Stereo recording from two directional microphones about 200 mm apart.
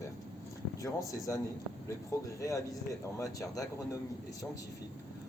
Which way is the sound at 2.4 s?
15° left (ahead or behind).